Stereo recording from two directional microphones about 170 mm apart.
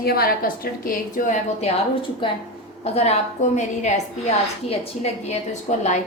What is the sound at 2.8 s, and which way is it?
A woman's voice, 40° left (ahead or behind).